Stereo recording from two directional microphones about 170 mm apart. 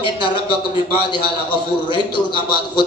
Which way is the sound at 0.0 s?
30° left (ahead or behind).